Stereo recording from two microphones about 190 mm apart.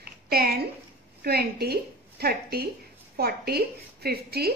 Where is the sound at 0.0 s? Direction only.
55° right (ahead or behind).